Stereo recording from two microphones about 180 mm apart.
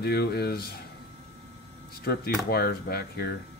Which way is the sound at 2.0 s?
60° left (ahead or behind).